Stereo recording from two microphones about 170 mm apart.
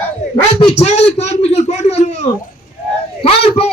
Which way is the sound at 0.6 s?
40° left (ahead or behind).